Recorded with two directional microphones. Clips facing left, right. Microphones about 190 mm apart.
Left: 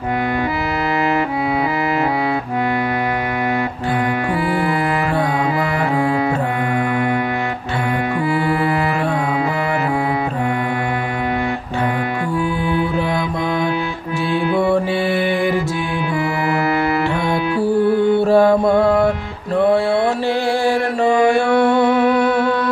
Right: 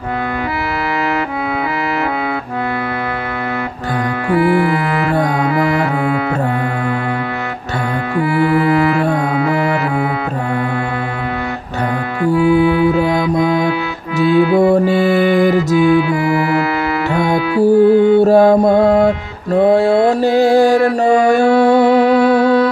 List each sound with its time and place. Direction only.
12.4 s music: 15° right (ahead or behind)
14.6 s music: 40° right (ahead or behind)
17.1 s music: 45° right (ahead or behind)
17.6 s mantra: 40° right (ahead or behind)